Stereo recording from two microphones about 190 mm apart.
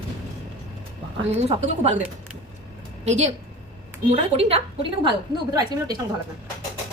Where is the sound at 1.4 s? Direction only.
35° right (ahead or behind).